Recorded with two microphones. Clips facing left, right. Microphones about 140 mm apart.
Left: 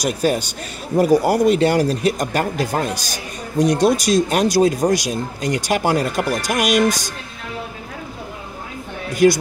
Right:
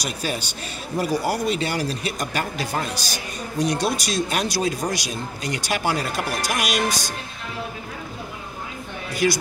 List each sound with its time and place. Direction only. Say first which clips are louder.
0.0 s a man's voice: left 9 dB; 45° left (ahead or behind)
9.1 s a man's voice: left 8 dB; 45° left (ahead or behind)